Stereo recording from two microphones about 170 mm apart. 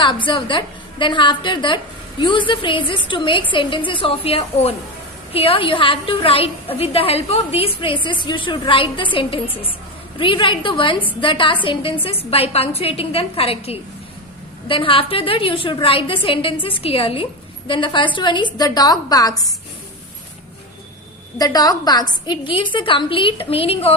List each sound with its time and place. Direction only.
0.0 s a woman's voice: 30° left (ahead or behind)
21.3 s a woman's voice: 20° left (ahead or behind)